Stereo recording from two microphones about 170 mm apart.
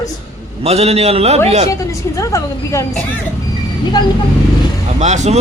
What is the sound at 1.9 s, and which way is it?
Speech, 20° left (ahead or behind).